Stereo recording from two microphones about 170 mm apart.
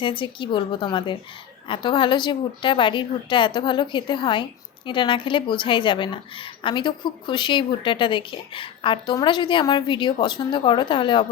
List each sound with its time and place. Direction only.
0.0 s a woman's voice: 30° left (ahead or behind)